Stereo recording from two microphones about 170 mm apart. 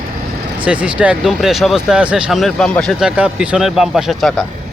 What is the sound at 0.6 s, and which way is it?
Speech, 5° right (ahead or behind).